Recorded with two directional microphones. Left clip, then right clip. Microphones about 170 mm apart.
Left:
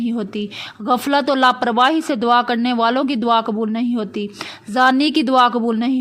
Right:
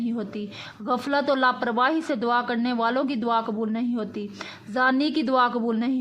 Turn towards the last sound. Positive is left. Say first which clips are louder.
# left 7 dB
turn(degrees=30)  # may be behind; listen again after turning